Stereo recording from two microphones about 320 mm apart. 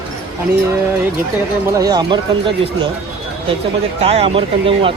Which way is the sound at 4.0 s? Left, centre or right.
Centre.